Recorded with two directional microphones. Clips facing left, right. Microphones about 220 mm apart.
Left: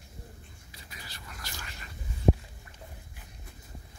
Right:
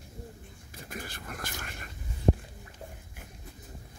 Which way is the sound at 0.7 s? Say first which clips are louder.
Right 10 dB; 50° right (ahead or behind).